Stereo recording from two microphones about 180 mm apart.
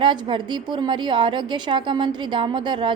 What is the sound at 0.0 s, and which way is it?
A woman's voice, 25° right (ahead or behind).